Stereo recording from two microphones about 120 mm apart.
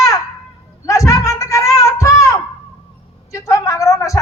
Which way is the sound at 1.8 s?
25° left (ahead or behind).